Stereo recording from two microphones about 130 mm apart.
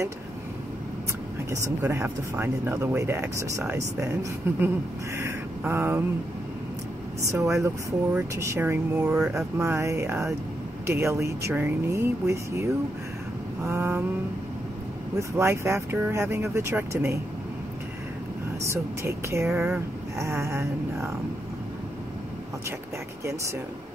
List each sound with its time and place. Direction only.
1.8 s speech: 15° right (ahead or behind)
5.6 s mantra: 20° right (ahead or behind)
7.2 s speech: 25° right (ahead or behind)
13.7 s speech: 20° right (ahead or behind)
15.1 s speech: 20° right (ahead or behind)
18.7 s speech: 20° right (ahead or behind)